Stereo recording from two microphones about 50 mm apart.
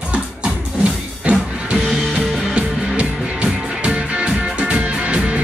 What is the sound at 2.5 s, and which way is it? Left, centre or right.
Music, right.